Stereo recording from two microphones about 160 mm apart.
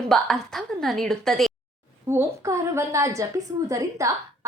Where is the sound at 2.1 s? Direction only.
15° right (ahead or behind).